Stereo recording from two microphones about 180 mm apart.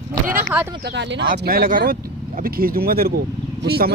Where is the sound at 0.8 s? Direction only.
75° right (ahead or behind).